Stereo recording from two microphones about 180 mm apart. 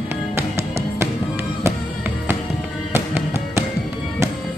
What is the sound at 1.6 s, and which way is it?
Music, 10° right (ahead or behind).